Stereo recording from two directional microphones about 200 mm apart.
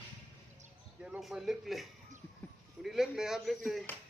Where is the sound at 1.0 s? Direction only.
5° right (ahead or behind).